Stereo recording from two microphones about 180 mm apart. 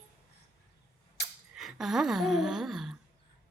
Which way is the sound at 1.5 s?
Centre (ahead or behind).